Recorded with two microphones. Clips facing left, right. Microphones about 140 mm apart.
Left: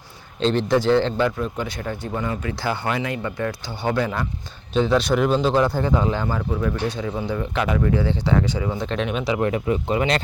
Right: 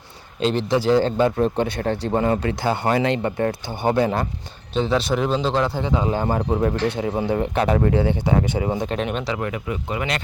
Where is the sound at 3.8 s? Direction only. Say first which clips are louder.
Right 3 dB; 25° right (ahead or behind).